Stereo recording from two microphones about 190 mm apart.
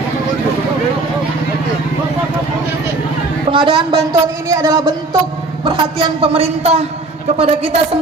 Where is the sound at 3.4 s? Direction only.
25° right (ahead or behind).